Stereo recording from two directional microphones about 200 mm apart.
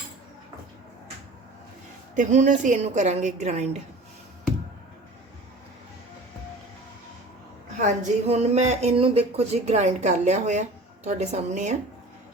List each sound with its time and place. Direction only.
2.1 s speech: 35° right (ahead or behind)
7.8 s speech: 35° right (ahead or behind)